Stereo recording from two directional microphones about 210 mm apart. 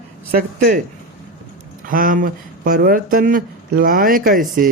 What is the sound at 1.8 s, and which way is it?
Speech, 40° right (ahead or behind).